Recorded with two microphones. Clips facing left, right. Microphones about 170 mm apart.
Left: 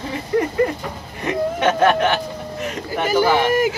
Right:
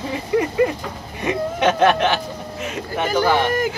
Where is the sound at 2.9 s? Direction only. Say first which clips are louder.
Left 1 dB; 10° left (ahead or behind).